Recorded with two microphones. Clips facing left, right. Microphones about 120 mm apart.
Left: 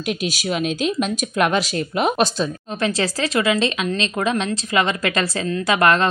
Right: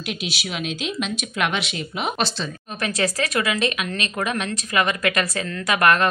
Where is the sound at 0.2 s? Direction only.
40° left (ahead or behind).